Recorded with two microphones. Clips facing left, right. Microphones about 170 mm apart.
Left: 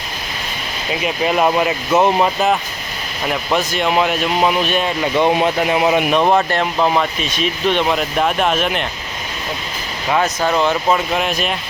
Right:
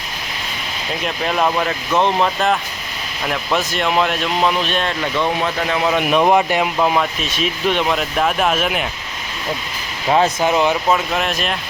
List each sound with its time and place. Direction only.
1.0 s speech: 10° left (ahead or behind)
5.1 s speech: 20° left (ahead or behind)
6.0 s speech: centre (ahead or behind)
10.1 s speech: 30° right (ahead or behind)
10.4 s speech: 15° right (ahead or behind)
10.9 s speech: centre (ahead or behind)